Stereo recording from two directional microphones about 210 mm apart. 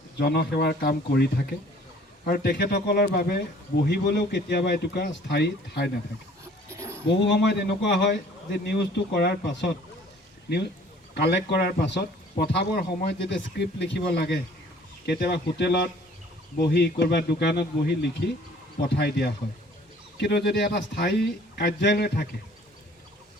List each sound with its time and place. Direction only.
0.2 s speech: 50° left (ahead or behind)
6.7 s a sound: 15° right (ahead or behind)
7.2 s speech: 55° left (ahead or behind)
11.1 s a man's voice: 55° left (ahead or behind)
18.9 s speech: 50° left (ahead or behind)